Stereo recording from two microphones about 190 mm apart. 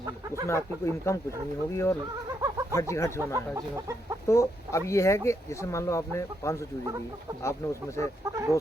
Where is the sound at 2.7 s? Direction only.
15° left (ahead or behind).